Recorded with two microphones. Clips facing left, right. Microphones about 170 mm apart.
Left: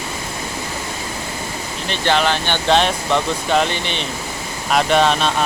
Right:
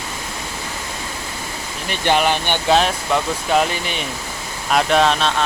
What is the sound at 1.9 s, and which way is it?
Speech, 10° right (ahead or behind).